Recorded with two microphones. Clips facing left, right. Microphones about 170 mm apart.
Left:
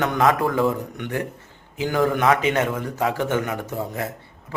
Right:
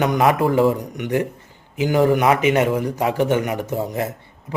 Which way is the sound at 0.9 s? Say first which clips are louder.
Right 6 dB; 15° right (ahead or behind).